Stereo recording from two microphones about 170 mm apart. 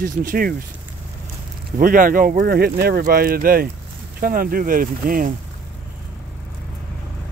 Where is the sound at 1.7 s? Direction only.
55° right (ahead or behind).